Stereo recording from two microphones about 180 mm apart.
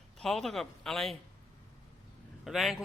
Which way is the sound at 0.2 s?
Centre (ahead or behind).